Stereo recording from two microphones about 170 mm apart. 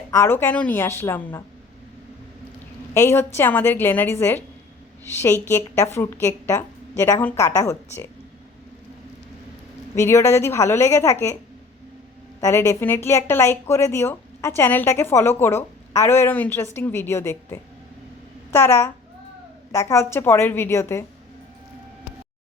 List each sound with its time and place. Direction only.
0.1 s a woman's voice: 15° left (ahead or behind)
2.9 s a woman's voice: 15° left (ahead or behind)
9.9 s a woman's voice: 15° left (ahead or behind)
12.4 s a woman's voice: 15° left (ahead or behind)